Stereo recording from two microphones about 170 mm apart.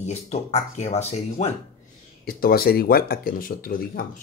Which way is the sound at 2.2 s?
60° left (ahead or behind).